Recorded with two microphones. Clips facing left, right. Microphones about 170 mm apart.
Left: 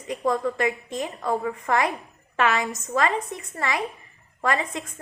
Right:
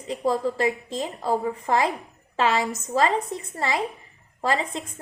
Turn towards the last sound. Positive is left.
turn(degrees=-30)  # may be behind; listen again after turning